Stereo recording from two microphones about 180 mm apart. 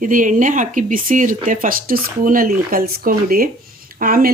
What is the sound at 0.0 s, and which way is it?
Speech, 50° right (ahead or behind).